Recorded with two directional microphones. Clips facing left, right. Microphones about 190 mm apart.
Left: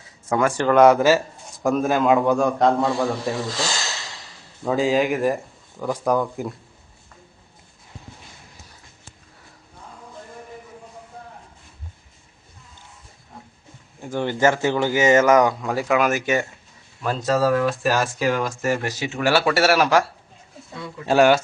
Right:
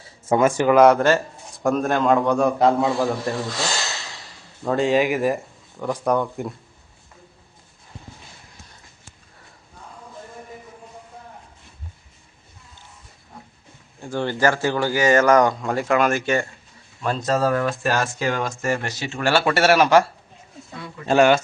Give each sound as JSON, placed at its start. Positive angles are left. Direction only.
{"t": 0.0, "sound": "speech", "side_deg": -25}
{"t": 0.8, "sound": "a man's voice", "side_deg": 0}
{"t": 4.6, "sound": "a man's voice", "side_deg": 0}
{"t": 14.0, "sound": "speech", "side_deg": 15}
{"t": 15.4, "sound": "a man's voice", "side_deg": 0}
{"t": 16.2, "sound": "speech", "side_deg": 15}
{"t": 17.0, "sound": "a man's voice", "side_deg": 0}
{"t": 19.2, "sound": "a man's voice", "side_deg": 5}
{"t": 21.1, "sound": "a man's voice", "side_deg": 0}